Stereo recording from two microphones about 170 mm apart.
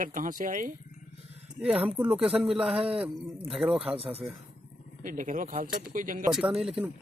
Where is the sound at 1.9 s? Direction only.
5° right (ahead or behind).